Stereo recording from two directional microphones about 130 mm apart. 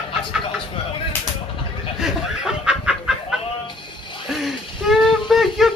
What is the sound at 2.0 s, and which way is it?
Snicker, 5° right (ahead or behind).